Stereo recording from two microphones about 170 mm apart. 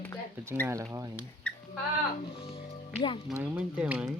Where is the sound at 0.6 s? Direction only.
15° right (ahead or behind).